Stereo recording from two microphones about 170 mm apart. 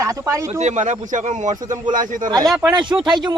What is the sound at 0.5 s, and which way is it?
Speech, 45° right (ahead or behind).